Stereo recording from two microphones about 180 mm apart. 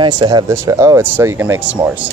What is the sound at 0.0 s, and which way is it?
Speech, 25° right (ahead or behind).